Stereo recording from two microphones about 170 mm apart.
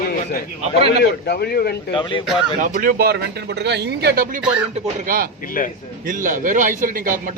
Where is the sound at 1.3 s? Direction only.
65° left (ahead or behind).